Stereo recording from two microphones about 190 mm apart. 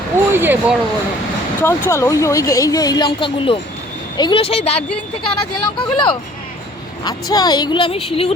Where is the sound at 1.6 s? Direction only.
15° left (ahead or behind).